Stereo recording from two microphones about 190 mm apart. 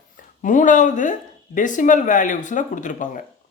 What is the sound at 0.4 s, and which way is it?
A man's voice, 40° left (ahead or behind).